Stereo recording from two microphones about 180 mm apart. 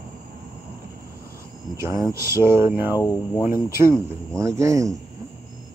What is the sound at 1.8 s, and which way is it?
Speech, 15° right (ahead or behind).